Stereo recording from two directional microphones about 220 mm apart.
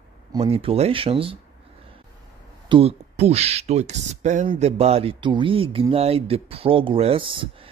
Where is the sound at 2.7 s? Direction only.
25° right (ahead or behind).